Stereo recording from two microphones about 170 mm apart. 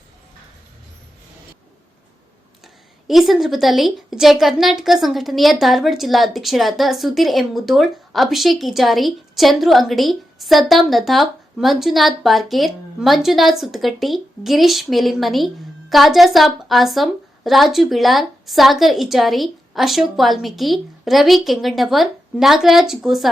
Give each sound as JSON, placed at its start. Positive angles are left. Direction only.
{"t": 3.1, "sound": "a woman's voice", "side_deg": 0}